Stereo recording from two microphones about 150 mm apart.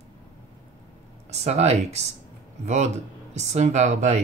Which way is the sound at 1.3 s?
45° right (ahead or behind).